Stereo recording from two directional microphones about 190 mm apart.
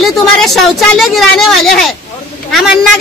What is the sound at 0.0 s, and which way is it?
A woman's voice, centre (ahead or behind).